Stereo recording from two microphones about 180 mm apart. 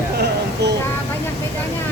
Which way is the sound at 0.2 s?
70° right (ahead or behind).